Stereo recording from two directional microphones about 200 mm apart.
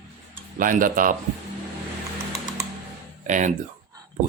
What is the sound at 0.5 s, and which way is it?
Speech, 40° right (ahead or behind).